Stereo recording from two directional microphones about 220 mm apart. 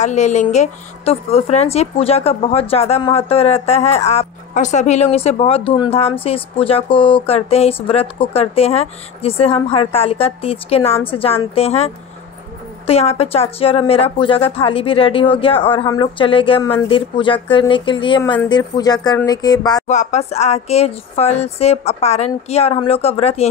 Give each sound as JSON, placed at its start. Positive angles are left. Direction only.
{"t": 0.0, "sound": "speech", "side_deg": 30}
{"t": 19.9, "sound": "speech", "side_deg": 30}